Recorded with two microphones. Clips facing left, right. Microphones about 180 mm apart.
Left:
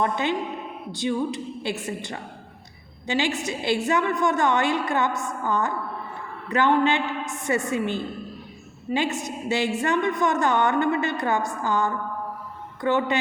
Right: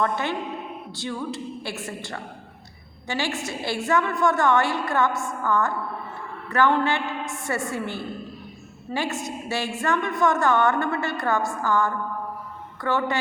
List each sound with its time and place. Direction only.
0.0 s a woman's voice: 20° left (ahead or behind)